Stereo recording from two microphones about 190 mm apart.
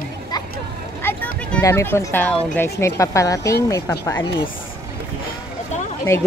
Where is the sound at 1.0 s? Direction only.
10° left (ahead or behind).